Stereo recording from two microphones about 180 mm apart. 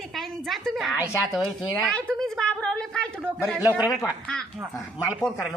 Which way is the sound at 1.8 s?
5° left (ahead or behind).